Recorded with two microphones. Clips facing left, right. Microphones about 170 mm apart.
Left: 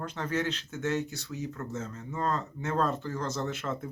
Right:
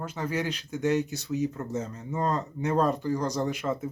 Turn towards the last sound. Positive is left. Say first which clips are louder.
# right 5 dB
turn(degrees=-10)  # may be behind; listen again after turning